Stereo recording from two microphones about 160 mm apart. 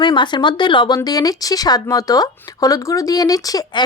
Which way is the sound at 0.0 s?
30° left (ahead or behind).